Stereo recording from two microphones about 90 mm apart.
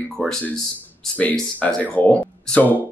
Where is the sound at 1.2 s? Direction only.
15° left (ahead or behind).